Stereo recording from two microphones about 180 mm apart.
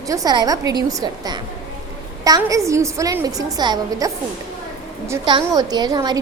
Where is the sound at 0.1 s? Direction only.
20° right (ahead or behind).